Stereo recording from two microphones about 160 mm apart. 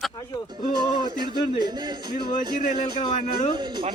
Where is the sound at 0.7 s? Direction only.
25° right (ahead or behind).